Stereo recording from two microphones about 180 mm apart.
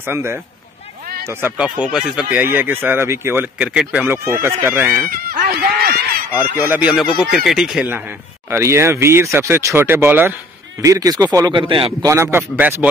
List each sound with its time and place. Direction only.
0.0 s speech: 15° right (ahead or behind)
5.1 s a sound: 55° right (ahead or behind)
6.7 s speech: 5° right (ahead or behind); by 12.1 s 30° right (ahead or behind)
12.1 s speech: 15° right (ahead or behind)